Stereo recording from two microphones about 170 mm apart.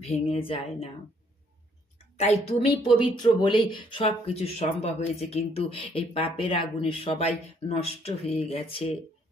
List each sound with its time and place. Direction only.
0.1 s speech: 35° left (ahead or behind)
2.1 s speech: 40° left (ahead or behind)